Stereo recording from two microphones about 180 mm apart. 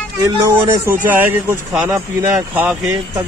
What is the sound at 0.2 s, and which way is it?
A man's voice, 15° right (ahead or behind).